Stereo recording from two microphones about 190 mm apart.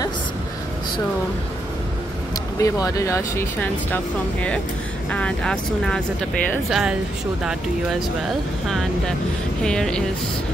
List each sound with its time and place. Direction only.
2.6 s speech: 15° left (ahead or behind); by 7.0 s 5° right (ahead or behind)
8.6 s speech: centre (ahead or behind)